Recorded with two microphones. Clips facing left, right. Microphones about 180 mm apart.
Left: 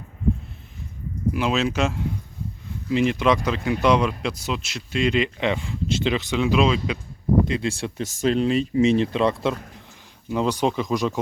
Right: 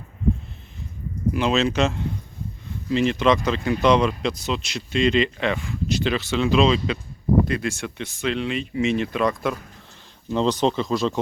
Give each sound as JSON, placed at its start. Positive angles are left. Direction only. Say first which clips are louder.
{"t": 1.3, "sound": "speech", "louder": "right 2 dB", "side_deg": 5}
{"t": 7.4, "sound": "speech", "louder": "left 1 dB", "side_deg": 25}
{"t": 10.2, "sound": "speech", "louder": "right 2 dB", "side_deg": 10}